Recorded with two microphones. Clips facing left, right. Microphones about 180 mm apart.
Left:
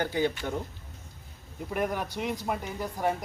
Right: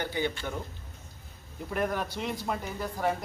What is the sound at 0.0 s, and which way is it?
Speech, 40° left (ahead or behind).